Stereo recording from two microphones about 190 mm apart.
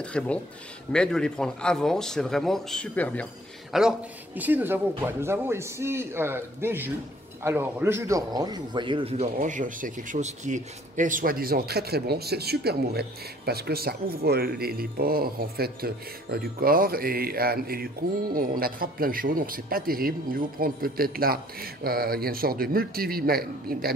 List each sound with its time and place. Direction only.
0.0 s a man's voice: 5° left (ahead or behind); by 23.9 s 50° right (ahead or behind)